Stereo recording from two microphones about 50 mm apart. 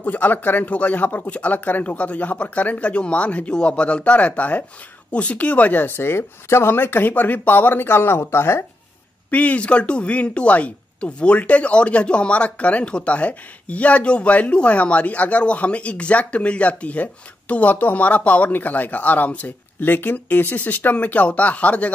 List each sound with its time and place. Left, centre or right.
0.0 s speech: left
9.3 s speech: left